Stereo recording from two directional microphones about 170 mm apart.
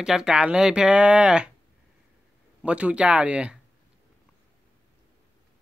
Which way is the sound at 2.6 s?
10° right (ahead or behind).